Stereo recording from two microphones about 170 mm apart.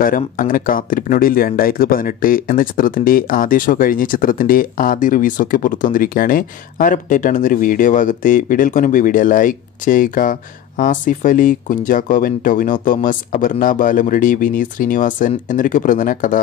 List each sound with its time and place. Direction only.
0.0 s speech: 55° left (ahead or behind)